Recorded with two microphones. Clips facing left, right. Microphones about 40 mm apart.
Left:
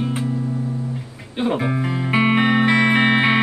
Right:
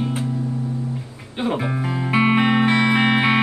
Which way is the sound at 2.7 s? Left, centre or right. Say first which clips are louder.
Left 1 dB; left.